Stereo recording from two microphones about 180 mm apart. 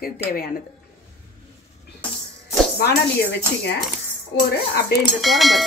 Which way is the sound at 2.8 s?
65° left (ahead or behind).